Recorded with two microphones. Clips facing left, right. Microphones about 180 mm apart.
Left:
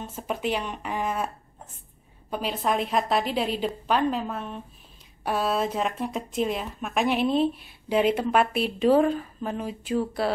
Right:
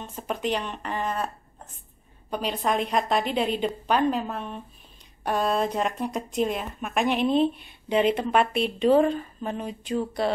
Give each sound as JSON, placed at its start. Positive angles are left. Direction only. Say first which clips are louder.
{"t": 0.0, "sound": "speech", "louder": "even", "side_deg": 5}
{"t": 2.3, "sound": "a woman's voice", "louder": "even", "side_deg": 5}